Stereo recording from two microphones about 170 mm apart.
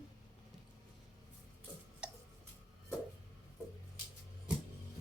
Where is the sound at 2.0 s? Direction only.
5° right (ahead or behind).